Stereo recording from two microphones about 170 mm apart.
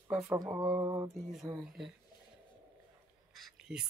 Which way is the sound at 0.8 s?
15° right (ahead or behind).